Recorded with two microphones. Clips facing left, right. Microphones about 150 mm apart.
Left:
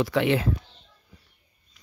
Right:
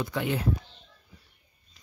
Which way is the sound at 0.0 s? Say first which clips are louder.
Left 7 dB; 90° left.